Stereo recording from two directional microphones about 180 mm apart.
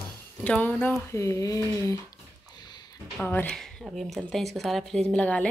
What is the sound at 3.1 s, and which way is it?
Speech, 10° left (ahead or behind).